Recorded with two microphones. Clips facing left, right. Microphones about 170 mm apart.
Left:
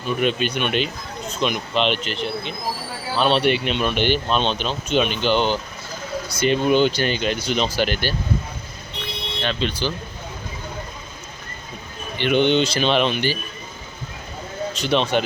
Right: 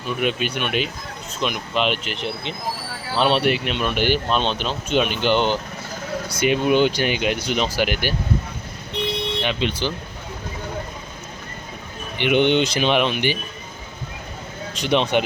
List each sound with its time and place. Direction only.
0.2 s speech: 5° right (ahead or behind)
2.1 s speech: 25° right (ahead or behind)
3.2 s speech: 10° right (ahead or behind)
9.4 s speech: 15° right (ahead or behind)
12.1 s speech: 15° right (ahead or behind)
14.8 s speech: 15° right (ahead or behind)